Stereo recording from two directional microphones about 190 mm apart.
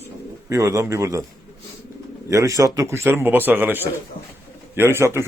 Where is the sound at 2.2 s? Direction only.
15° right (ahead or behind).